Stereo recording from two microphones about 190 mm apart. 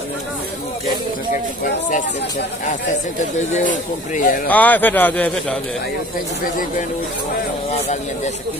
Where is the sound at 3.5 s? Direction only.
45° left (ahead or behind).